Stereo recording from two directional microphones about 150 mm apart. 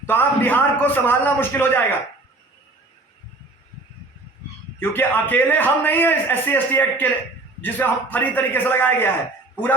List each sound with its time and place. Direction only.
0.0 s a man's voice: 15° left (ahead or behind)
4.8 s a man's voice: 15° left (ahead or behind)